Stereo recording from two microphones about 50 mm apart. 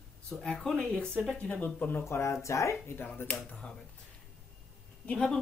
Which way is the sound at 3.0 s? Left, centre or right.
Left.